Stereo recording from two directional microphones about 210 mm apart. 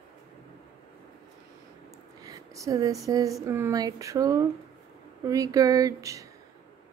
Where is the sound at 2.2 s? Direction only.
15° right (ahead or behind).